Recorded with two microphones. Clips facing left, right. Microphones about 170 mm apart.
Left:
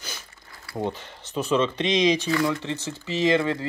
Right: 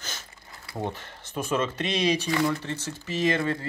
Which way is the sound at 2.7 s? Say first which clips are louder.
Left 3 dB; 20° left (ahead or behind).